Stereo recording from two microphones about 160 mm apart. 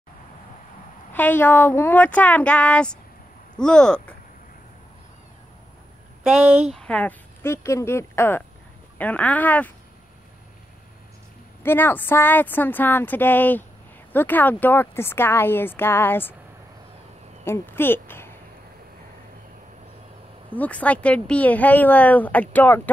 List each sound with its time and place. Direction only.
1.1 s speech: 10° left (ahead or behind)
6.2 s speech: 5° right (ahead or behind)
6.7 s speech: 5° left (ahead or behind)
11.6 s speech: 15° left (ahead or behind)
17.5 s speech: 15° left (ahead or behind)
20.5 s speech: 10° left (ahead or behind)